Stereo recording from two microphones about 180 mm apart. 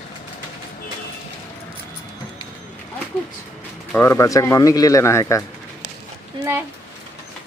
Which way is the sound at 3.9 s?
15° left (ahead or behind).